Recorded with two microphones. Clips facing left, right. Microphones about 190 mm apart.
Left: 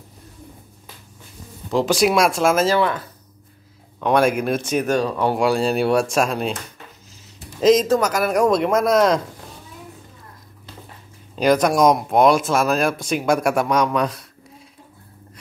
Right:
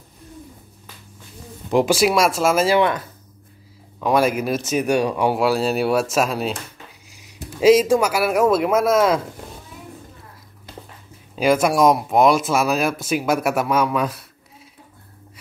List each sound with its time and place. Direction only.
1.7 s speech: 15° right (ahead or behind)
2.0 s speech: centre (ahead or behind)
4.0 s speech: 5° right (ahead or behind)
7.6 s speech: 10° right (ahead or behind)
11.3 s speech: 5° right (ahead or behind)